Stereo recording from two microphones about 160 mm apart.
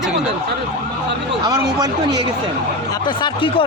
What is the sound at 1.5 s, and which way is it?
Speech, 25° right (ahead or behind).